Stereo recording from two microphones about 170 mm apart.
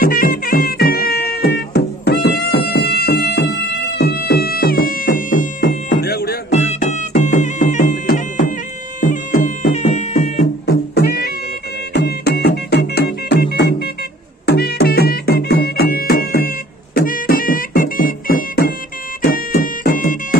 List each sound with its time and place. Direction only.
0.0 s music: 60° left (ahead or behind)
5.6 s music: 75° left (ahead or behind)
6.7 s music: 45° left (ahead or behind)
9.8 s music: 45° left (ahead or behind)
10.4 s music: 70° left (ahead or behind)